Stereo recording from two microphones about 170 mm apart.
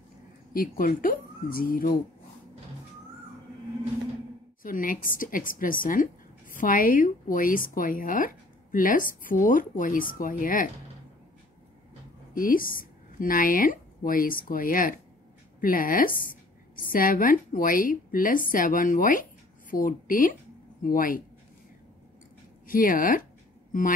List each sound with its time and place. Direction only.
0.5 s speech: 55° left (ahead or behind)
4.6 s a woman's voice: 55° left (ahead or behind)
12.4 s a woman's voice: 55° left (ahead or behind)
22.7 s speech: 55° left (ahead or behind)